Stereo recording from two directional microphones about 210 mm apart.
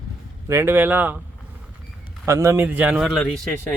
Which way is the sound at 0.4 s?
10° right (ahead or behind).